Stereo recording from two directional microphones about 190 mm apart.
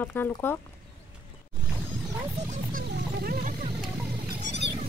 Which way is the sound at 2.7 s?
50° right (ahead or behind).